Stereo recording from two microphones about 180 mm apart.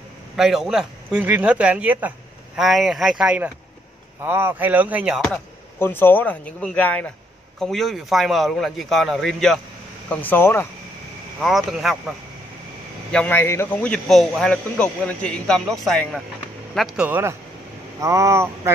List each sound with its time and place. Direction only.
0.4 s speech: centre (ahead or behind)
5.8 s speech: 10° left (ahead or behind)
11.4 s speech: centre (ahead or behind)
13.1 s speech: 10° left (ahead or behind); by 18.7 s 15° right (ahead or behind)